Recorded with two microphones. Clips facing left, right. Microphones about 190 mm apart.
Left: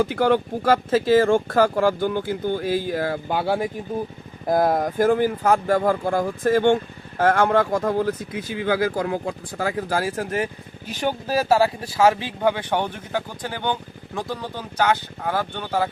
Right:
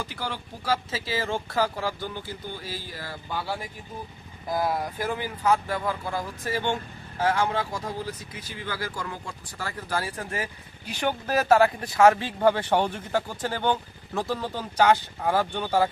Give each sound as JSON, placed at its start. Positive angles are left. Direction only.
{"t": 0.0, "sound": "speech", "side_deg": 55}
{"t": 10.0, "sound": "speech", "side_deg": 90}
{"t": 11.4, "sound": "speech", "side_deg": 10}